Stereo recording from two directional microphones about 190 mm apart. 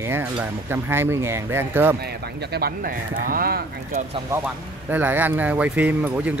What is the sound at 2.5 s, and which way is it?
Speech, 55° right (ahead or behind).